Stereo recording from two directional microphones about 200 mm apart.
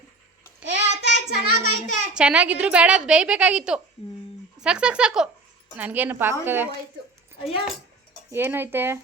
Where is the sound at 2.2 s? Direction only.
5° right (ahead or behind).